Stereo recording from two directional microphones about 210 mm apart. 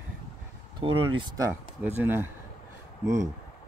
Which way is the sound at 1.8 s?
10° right (ahead or behind).